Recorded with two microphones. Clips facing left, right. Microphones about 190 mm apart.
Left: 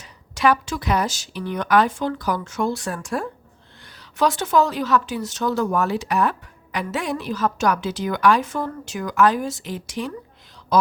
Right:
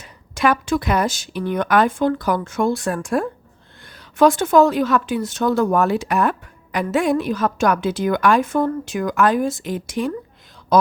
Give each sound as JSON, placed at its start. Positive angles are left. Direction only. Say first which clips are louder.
{"t": 0.0, "sound": "a woman's voice", "louder": "right 1 dB", "side_deg": -55}